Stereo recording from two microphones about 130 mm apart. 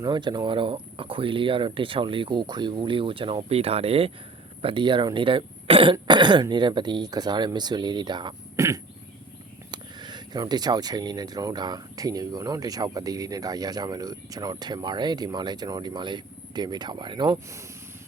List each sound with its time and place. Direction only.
0.0 s speech: 35° right (ahead or behind)
4.6 s speech: 40° right (ahead or behind)
8.5 s cough: 25° right (ahead or behind)
9.7 s speech: 35° right (ahead or behind)